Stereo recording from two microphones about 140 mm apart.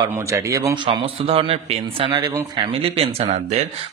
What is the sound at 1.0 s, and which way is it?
Speech, 45° right (ahead or behind).